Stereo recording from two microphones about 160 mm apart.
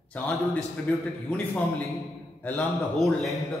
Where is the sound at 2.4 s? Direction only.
5° left (ahead or behind).